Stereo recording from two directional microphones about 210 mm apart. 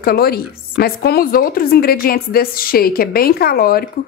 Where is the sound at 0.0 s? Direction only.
45° left (ahead or behind).